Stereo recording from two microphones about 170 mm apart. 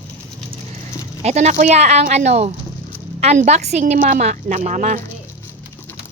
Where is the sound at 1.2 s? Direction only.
40° right (ahead or behind).